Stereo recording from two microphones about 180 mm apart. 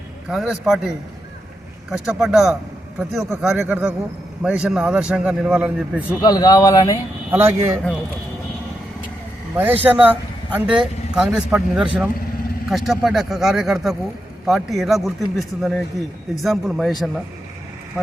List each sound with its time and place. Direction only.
0.3 s speech: centre (ahead or behind)
6.2 s a man's voice: 20° left (ahead or behind)
7.3 s speech: 15° right (ahead or behind)
9.6 s speech: 10° right (ahead or behind)